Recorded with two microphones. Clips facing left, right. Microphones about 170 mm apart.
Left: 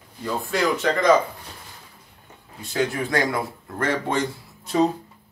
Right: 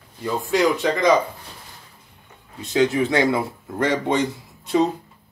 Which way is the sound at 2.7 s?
20° right (ahead or behind).